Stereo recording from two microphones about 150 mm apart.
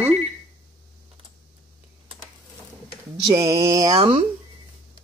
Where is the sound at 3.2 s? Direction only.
20° right (ahead or behind).